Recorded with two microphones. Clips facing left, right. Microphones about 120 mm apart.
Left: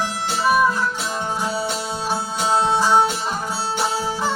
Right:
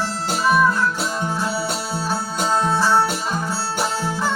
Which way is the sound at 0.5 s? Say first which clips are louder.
Right 1 dB; 10° left (ahead or behind).